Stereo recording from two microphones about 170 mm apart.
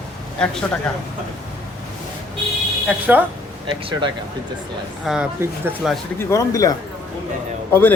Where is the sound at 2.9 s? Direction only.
10° right (ahead or behind).